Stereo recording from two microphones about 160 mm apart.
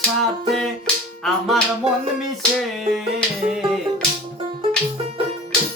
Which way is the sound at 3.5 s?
5° right (ahead or behind).